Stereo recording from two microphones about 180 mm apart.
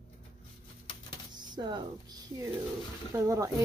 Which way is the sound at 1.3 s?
25° right (ahead or behind).